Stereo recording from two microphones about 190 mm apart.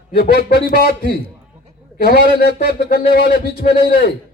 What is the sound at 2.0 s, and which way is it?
A man's voice, 55° left (ahead or behind).